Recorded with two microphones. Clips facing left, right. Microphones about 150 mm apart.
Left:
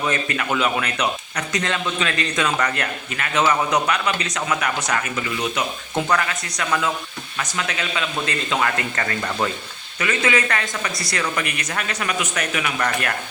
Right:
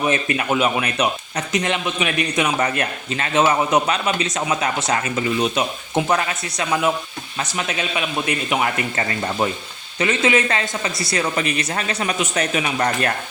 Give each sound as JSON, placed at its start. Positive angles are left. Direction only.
{"t": 0.0, "sound": "speech", "side_deg": -20}